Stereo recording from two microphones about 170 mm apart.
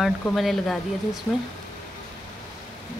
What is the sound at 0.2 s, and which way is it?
Speech, 5° left (ahead or behind).